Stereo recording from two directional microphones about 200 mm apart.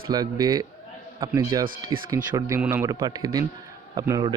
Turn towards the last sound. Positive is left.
turn(degrees=-20)  # may be behind; listen again after turning